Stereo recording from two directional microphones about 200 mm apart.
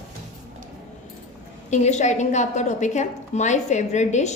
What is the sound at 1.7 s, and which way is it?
A woman's voice, 35° left (ahead or behind).